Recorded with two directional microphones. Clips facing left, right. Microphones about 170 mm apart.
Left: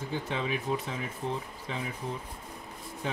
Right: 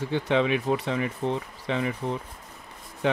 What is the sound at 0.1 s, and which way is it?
Speech, 75° right (ahead or behind).